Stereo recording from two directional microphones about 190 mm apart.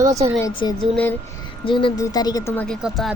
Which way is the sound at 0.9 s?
10° left (ahead or behind).